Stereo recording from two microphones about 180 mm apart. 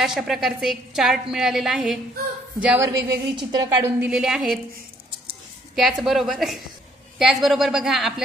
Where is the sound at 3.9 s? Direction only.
5° right (ahead or behind).